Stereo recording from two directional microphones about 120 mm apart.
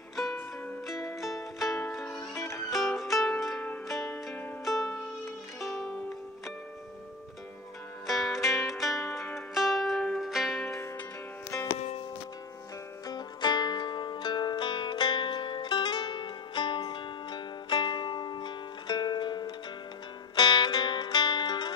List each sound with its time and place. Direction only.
0.1 s music: centre (ahead or behind)
2.3 s music: 20° left (ahead or behind)
2.7 s music: centre (ahead or behind)
4.6 s music: centre (ahead or behind)
4.9 s music: 25° left (ahead or behind)
8.1 s zither: centre (ahead or behind)
9.5 s music: centre (ahead or behind)
13.0 s music: 35° left (ahead or behind)